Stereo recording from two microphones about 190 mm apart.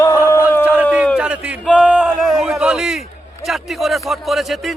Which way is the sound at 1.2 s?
5° right (ahead or behind).